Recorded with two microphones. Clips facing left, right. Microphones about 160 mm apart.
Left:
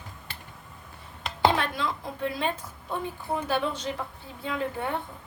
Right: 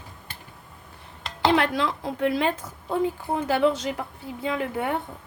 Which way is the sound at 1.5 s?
90° right.